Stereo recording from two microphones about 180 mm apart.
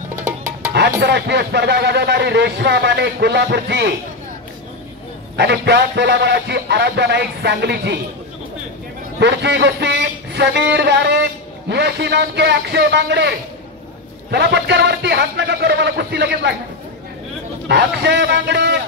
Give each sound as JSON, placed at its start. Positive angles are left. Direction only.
{"t": 0.7, "sound": "speech", "side_deg": -70}
{"t": 5.4, "sound": "speech", "side_deg": -70}
{"t": 9.2, "sound": "speech", "side_deg": -70}
{"t": 14.3, "sound": "speech", "side_deg": -70}
{"t": 17.6, "sound": "speech", "side_deg": -70}